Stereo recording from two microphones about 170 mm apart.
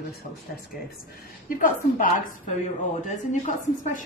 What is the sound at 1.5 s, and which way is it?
A woman's voice, 50° left (ahead or behind).